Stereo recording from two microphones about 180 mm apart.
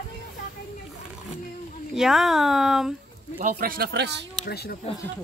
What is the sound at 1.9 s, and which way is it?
Speech, centre (ahead or behind).